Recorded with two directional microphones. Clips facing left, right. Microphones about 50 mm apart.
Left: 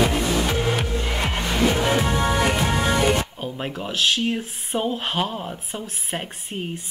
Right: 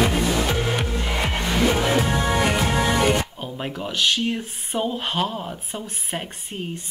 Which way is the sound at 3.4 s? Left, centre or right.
Centre.